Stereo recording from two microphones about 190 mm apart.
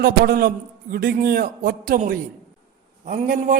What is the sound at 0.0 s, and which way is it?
Speech, 55° right (ahead or behind).